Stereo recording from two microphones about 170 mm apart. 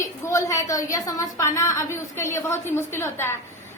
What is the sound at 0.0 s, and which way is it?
A woman's voice, 15° left (ahead or behind).